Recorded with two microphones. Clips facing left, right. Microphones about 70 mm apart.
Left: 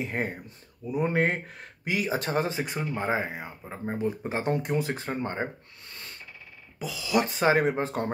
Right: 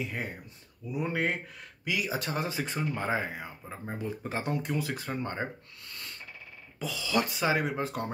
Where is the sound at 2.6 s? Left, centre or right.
Centre.